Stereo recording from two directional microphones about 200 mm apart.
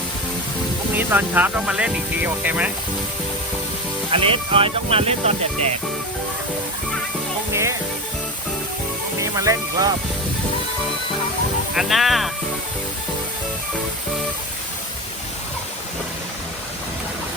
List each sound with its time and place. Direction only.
0.9 s speech: 10° right (ahead or behind)
4.1 s speech: 25° right (ahead or behind)
7.5 s speech: 15° right (ahead or behind)
9.2 s speech: 15° right (ahead or behind)
11.7 s speech: centre (ahead or behind)